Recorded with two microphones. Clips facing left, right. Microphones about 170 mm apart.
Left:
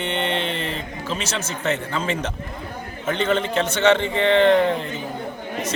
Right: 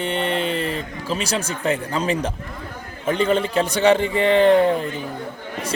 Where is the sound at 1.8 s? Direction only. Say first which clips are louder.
Right 3 dB; 40° right (ahead or behind).